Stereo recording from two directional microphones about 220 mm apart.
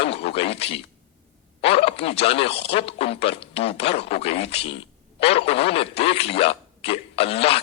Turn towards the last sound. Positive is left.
turn(degrees=25)  # may be behind; listen again after turning